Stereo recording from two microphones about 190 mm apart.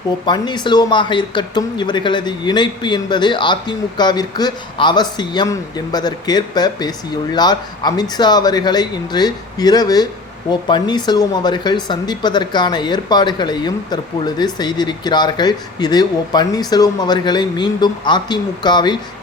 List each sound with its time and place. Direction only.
0.3 s speech: 25° left (ahead or behind)